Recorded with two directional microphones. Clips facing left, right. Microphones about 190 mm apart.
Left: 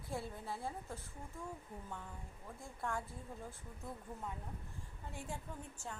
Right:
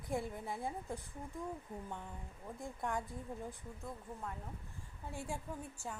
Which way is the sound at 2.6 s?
15° right (ahead or behind).